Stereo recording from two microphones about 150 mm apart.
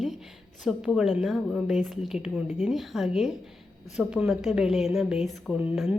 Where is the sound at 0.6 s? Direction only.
Centre (ahead or behind).